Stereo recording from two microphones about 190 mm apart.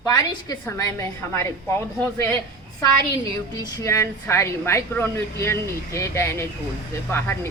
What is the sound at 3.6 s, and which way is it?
Speech, 20° left (ahead or behind).